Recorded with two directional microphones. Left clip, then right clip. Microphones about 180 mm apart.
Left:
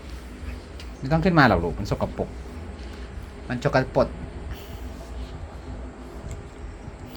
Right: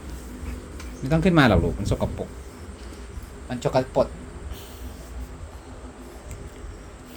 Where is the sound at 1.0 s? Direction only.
10° right (ahead or behind).